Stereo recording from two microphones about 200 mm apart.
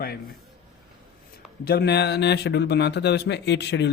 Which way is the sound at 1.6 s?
50° left (ahead or behind).